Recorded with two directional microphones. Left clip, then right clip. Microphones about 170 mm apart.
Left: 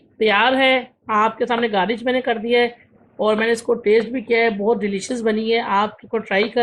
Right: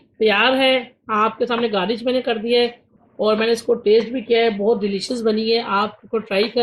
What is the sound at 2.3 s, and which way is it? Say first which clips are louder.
Speech: even; 10° left (ahead or behind).